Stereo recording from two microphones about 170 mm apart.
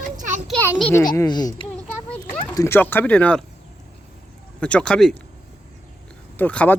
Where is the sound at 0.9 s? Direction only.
20° left (ahead or behind).